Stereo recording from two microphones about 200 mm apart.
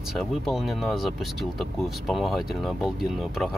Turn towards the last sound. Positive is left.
turn(degrees=0)  # may be behind; listen again after turning